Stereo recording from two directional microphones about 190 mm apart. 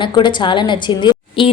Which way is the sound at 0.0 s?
25° left (ahead or behind).